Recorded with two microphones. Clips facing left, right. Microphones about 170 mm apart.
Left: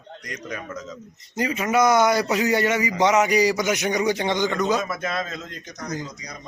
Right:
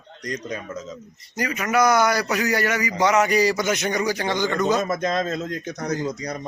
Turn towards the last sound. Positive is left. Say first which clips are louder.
# right 6 dB
turn(degrees=-60)  # may be behind; listen again after turning